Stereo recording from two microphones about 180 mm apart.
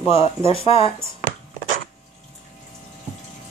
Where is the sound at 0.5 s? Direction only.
35° left (ahead or behind).